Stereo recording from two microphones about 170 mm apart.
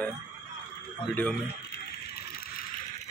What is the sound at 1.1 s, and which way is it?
Speech, 5° left (ahead or behind).